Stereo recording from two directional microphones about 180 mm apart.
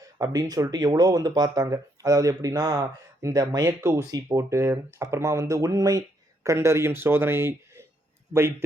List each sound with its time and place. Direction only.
0.0 s a man's voice: 20° right (ahead or behind)